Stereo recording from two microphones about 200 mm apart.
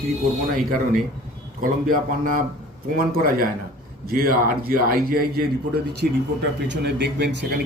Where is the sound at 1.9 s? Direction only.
45° right (ahead or behind).